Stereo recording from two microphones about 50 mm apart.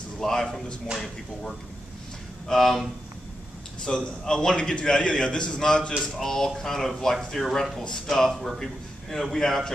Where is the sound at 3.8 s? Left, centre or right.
Centre.